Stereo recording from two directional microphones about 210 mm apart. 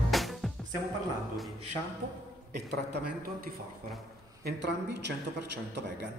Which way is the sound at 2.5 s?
50° right (ahead or behind).